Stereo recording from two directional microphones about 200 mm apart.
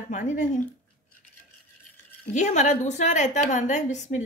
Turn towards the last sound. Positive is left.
turn(degrees=35)  # may be behind; listen again after turning